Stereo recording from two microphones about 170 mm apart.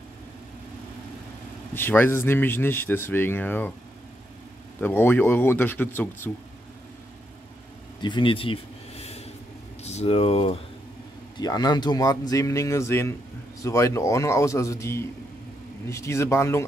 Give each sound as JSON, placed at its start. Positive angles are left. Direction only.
{"t": 1.7, "sound": "speech", "side_deg": 10}
{"t": 4.7, "sound": "speech", "side_deg": 10}
{"t": 8.0, "sound": "a sound", "side_deg": 30}
{"t": 9.8, "sound": "speech", "side_deg": 40}
{"t": 11.3, "sound": "speech", "side_deg": 25}